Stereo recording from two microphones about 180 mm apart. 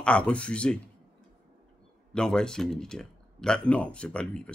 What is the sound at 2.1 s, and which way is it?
Speech, 5° left (ahead or behind).